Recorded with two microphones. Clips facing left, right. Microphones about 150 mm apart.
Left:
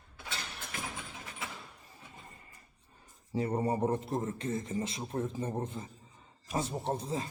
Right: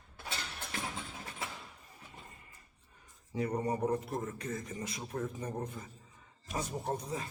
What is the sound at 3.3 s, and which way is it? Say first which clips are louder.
A man's voice: left 2 dB; 30° left (ahead or behind).